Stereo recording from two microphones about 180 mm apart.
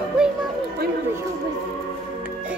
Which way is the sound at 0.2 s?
5° right (ahead or behind).